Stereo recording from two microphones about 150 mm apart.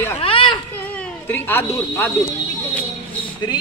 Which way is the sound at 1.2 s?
15° left (ahead or behind).